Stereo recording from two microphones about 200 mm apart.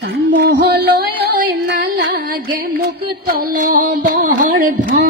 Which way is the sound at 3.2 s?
50° right (ahead or behind).